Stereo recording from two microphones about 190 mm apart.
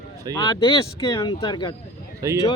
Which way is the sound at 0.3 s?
20° left (ahead or behind).